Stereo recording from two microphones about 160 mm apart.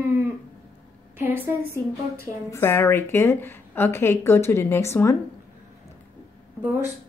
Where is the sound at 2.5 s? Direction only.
15° left (ahead or behind).